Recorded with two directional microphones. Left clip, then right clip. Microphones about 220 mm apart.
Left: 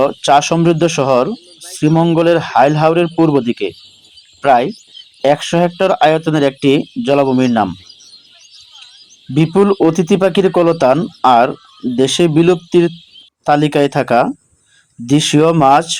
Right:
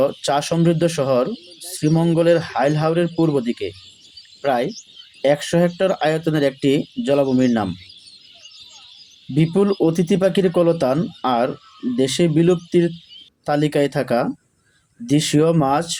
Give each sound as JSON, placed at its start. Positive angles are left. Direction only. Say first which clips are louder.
{"t": 0.0, "sound": "speech", "louder": "left 8 dB", "side_deg": 10}
{"t": 5.2, "sound": "speech", "louder": "left 5 dB", "side_deg": 10}
{"t": 9.3, "sound": "speech", "louder": "left 6 dB", "side_deg": 15}